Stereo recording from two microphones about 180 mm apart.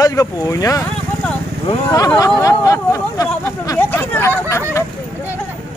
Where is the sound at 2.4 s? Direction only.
20° left (ahead or behind).